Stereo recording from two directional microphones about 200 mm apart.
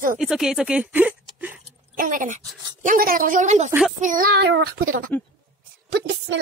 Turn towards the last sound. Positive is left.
turn(degrees=-60)  # may be behind; listen again after turning